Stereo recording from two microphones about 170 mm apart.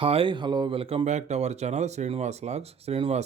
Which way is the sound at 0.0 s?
30° right (ahead or behind).